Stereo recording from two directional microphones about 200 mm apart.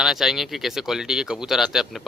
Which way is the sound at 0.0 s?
Centre (ahead or behind).